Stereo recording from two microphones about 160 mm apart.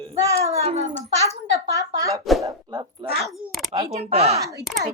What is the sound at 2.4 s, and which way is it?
Speech, 20° right (ahead or behind).